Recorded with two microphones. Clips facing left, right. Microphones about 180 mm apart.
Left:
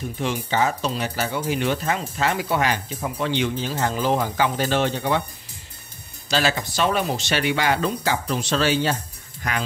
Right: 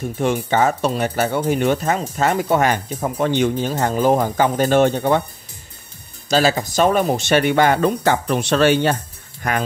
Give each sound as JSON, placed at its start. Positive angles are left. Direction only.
{"t": 0.2, "sound": "speech", "side_deg": -50}
{"t": 6.2, "sound": "speech", "side_deg": -40}